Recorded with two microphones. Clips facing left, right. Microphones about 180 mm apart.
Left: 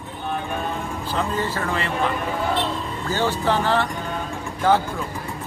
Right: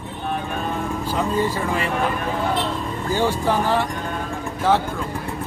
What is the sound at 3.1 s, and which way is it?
Speech, 10° right (ahead or behind).